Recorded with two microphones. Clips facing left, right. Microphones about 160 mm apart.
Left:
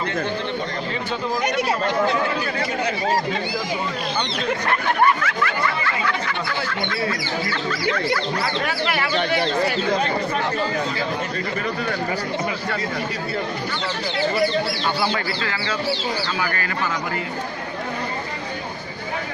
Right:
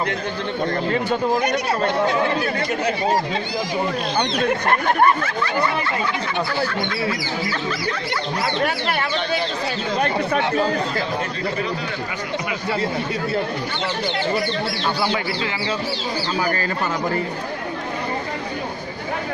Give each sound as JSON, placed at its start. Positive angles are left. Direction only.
{"t": 4.6, "sound": "speech", "side_deg": -40}
{"t": 9.9, "sound": "speech", "side_deg": -60}
{"t": 16.3, "sound": "speech", "side_deg": -35}